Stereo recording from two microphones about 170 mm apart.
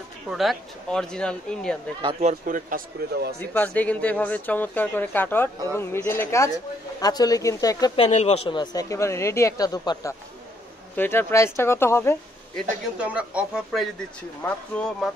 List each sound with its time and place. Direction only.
0.3 s speech: centre (ahead or behind)
2.1 s a man's voice: 50° right (ahead or behind)
3.3 s speech: 10° left (ahead or behind)
7.9 s speech: 35° left (ahead or behind)
8.5 s speech: 20° left (ahead or behind)
13.0 s speech: 10° right (ahead or behind)